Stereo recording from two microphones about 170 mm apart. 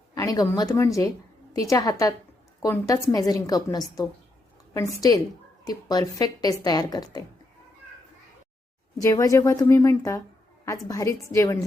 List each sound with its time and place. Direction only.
0.1 s speech: 20° left (ahead or behind)
9.0 s speech: 20° left (ahead or behind)